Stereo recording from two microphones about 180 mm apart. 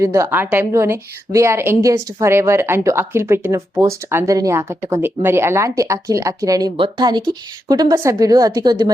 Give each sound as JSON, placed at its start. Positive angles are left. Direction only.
{"t": 0.0, "sound": "a woman's voice", "side_deg": -15}